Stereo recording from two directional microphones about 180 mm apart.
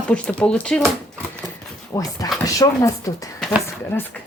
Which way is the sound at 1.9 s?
15° left (ahead or behind).